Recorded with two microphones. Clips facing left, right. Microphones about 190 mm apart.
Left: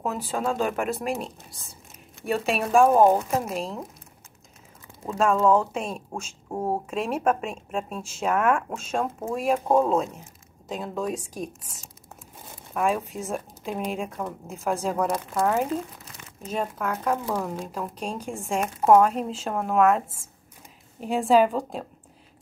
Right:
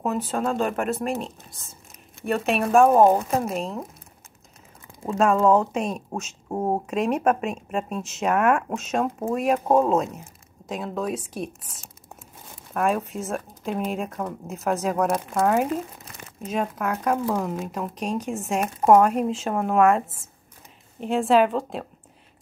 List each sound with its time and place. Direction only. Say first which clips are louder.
0.0 s speech: right 2 dB; centre (ahead or behind)
2.2 s speech: right 2 dB; centre (ahead or behind)
5.0 s speech: right 2 dB; 5° right (ahead or behind)
6.5 s speech: right 3 dB; 20° right (ahead or behind)
6.9 s speech: right 3 dB; centre (ahead or behind)
12.7 s speech: right 1 dB; centre (ahead or behind)
21.0 s speech: right 1 dB; centre (ahead or behind)